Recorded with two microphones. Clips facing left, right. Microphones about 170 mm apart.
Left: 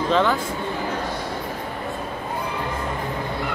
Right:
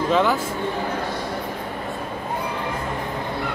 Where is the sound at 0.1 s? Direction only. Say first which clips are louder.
Even; 5° right (ahead or behind).